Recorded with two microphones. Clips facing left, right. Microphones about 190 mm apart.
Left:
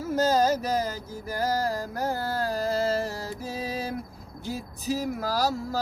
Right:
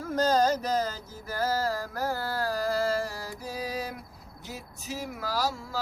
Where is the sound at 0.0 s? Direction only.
5° left (ahead or behind).